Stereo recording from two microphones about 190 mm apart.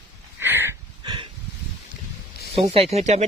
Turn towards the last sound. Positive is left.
turn(degrees=-35)  # may be behind; listen again after turning